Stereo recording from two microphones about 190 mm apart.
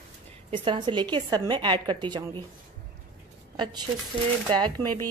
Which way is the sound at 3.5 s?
25° right (ahead or behind).